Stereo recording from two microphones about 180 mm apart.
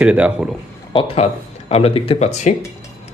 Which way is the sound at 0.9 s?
35° left (ahead or behind).